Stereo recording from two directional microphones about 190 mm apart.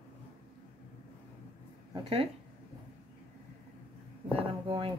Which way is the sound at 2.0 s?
30° right (ahead or behind).